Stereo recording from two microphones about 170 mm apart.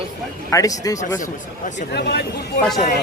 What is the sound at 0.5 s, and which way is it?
Speech, 20° left (ahead or behind).